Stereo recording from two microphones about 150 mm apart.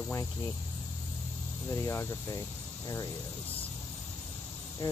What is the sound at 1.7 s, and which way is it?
Speech, 20° left (ahead or behind).